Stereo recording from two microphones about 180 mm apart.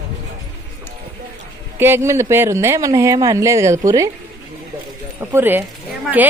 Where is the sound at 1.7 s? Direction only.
15° right (ahead or behind).